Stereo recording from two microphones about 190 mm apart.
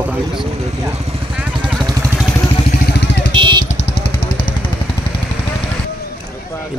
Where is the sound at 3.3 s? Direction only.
25° right (ahead or behind).